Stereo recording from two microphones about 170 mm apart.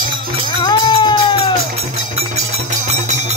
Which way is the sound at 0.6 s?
25° left (ahead or behind).